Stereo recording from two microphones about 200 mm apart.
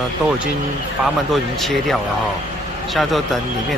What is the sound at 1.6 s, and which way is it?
Speech, centre (ahead or behind).